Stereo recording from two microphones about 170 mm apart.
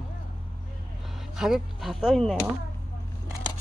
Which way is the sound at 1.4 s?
Centre (ahead or behind).